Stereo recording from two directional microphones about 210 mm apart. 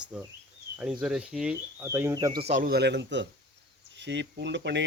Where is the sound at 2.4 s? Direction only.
35° right (ahead or behind).